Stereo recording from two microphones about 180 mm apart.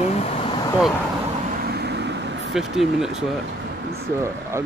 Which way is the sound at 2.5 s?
Centre (ahead or behind).